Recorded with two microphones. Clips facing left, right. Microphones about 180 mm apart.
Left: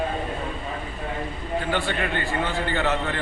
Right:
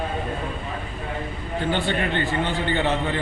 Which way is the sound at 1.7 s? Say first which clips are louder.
Right 3 dB; 25° right (ahead or behind).